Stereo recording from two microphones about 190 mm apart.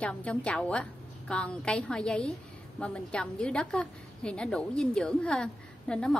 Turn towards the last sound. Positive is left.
turn(degrees=5)  # may be behind; listen again after turning